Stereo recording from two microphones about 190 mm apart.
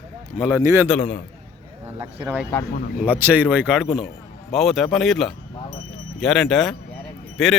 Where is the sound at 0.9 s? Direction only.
5° left (ahead or behind).